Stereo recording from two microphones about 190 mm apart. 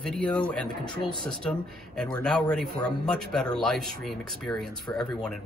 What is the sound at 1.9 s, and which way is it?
A man's voice, 5° left (ahead or behind).